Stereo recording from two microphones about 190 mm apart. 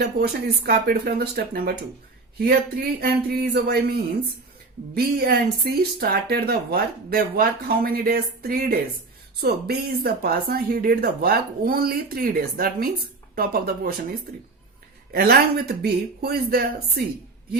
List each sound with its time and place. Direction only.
0.0 s speech: 55° right (ahead or behind)